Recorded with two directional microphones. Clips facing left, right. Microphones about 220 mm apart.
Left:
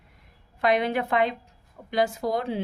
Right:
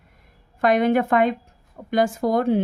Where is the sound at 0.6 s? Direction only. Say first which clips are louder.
Right 6 dB; 45° right (ahead or behind).